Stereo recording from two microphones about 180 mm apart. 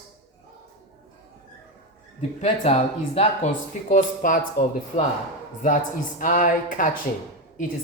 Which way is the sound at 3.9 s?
50° left (ahead or behind).